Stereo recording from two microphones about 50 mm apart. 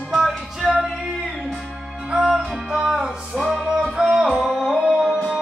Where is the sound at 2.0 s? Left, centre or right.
Centre.